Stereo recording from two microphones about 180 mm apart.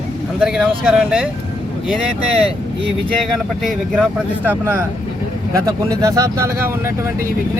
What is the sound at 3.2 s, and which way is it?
Speech, centre (ahead or behind).